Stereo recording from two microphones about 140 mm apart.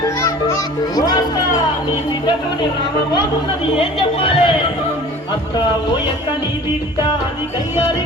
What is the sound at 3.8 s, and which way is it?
Speech, 40° left (ahead or behind).